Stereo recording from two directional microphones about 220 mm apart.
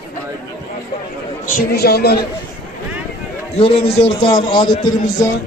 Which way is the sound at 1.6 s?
45° left (ahead or behind).